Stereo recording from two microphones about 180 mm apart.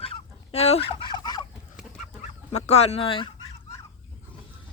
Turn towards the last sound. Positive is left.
turn(degrees=20)  # may be behind; listen again after turning